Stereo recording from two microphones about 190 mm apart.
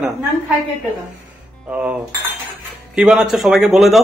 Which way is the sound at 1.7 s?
10° right (ahead or behind).